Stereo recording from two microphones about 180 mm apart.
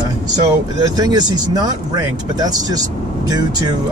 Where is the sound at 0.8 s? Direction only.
20° right (ahead or behind).